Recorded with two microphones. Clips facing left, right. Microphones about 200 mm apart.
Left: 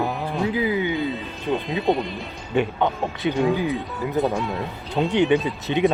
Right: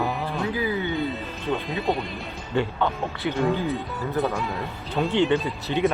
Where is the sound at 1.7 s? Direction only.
Centre (ahead or behind).